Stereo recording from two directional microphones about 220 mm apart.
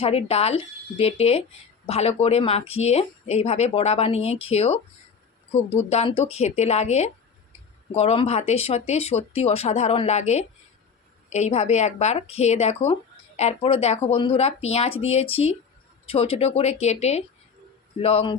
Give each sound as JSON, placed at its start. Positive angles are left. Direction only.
{"t": 0.0, "sound": "speech", "side_deg": 25}